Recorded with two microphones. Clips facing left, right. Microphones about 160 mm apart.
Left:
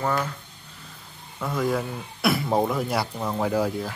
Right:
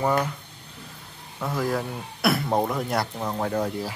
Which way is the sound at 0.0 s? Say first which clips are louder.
Right 2 dB; 15° right (ahead or behind).